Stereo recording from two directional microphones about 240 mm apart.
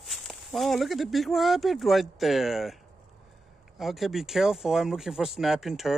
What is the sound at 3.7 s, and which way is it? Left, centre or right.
Speech, centre.